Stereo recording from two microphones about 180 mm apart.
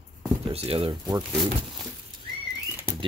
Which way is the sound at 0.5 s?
35° right (ahead or behind).